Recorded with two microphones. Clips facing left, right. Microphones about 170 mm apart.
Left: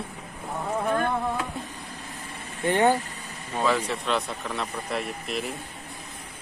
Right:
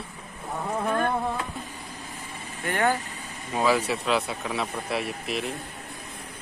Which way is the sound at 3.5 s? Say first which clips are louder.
Right 2 dB; 10° right (ahead or behind).